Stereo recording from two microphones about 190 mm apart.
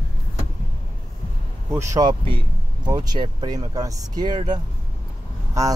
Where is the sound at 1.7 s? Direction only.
15° right (ahead or behind).